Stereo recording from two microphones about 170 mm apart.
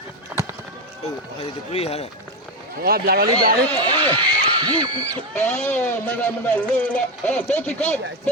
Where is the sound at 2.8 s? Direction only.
65° right (ahead or behind).